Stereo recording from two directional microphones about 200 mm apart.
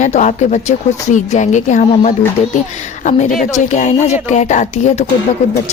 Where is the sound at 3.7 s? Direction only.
35° left (ahead or behind).